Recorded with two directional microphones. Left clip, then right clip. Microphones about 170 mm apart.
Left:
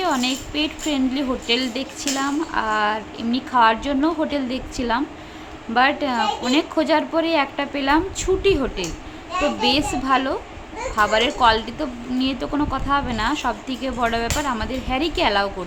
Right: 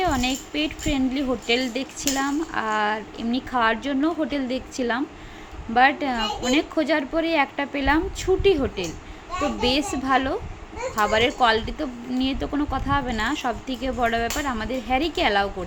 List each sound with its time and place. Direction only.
0.0 s a woman's voice: 15° right (ahead or behind)